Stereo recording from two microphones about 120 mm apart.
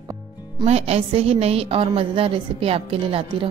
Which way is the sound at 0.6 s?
60° right (ahead or behind).